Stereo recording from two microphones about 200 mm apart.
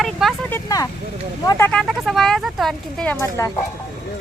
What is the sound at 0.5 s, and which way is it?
Vehicle, 15° left (ahead or behind).